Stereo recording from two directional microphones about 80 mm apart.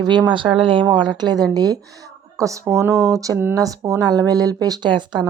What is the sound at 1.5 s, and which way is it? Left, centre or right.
Speech, right.